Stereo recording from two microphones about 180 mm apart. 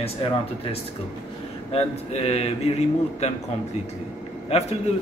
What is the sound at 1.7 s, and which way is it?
A man's voice, 35° left (ahead or behind).